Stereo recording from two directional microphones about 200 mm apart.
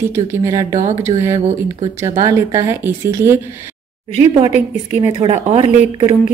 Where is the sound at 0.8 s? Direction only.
35° right (ahead or behind).